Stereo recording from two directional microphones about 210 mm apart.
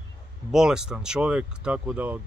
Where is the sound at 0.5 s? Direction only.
5° right (ahead or behind).